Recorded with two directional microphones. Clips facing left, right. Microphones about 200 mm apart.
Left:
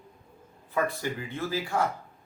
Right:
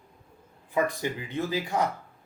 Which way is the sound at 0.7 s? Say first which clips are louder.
Right 2 dB; 15° right (ahead or behind).